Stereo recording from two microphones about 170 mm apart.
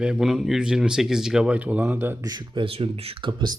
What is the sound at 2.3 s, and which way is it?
Speech, 25° right (ahead or behind).